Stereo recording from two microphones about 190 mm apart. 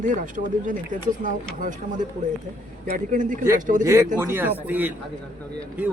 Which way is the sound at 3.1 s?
45° right (ahead or behind).